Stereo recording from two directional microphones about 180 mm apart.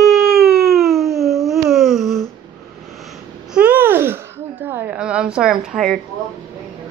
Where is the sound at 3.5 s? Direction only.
10° right (ahead or behind).